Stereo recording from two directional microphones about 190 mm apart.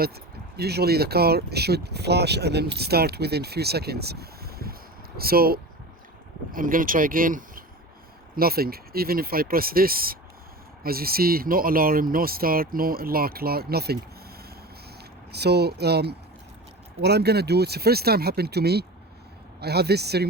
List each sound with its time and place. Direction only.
0.5 s speech: 55° right (ahead or behind)
15.3 s speech: 60° right (ahead or behind)